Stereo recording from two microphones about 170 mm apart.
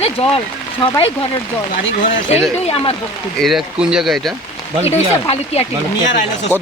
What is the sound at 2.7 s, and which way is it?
Speech, 35° left (ahead or behind).